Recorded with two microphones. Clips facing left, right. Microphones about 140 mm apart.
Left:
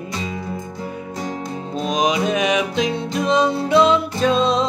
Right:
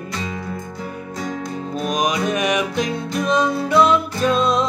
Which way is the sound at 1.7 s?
25° left (ahead or behind).